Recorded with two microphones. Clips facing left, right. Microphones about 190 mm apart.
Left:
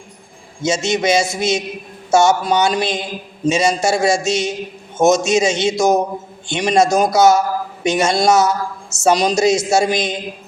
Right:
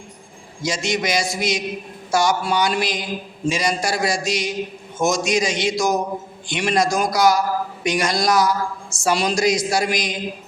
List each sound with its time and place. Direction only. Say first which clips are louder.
0.6 s a man's voice: left 5 dB; 25° left (ahead or behind)